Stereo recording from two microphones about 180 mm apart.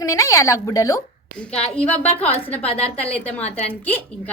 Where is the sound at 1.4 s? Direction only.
5° left (ahead or behind).